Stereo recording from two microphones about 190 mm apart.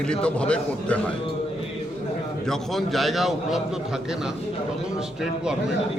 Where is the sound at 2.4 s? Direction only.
Centre (ahead or behind).